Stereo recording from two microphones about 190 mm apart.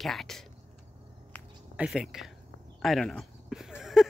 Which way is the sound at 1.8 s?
5° right (ahead or behind).